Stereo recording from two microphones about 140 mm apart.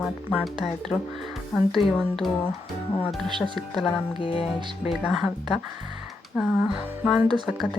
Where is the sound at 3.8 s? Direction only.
40° left (ahead or behind).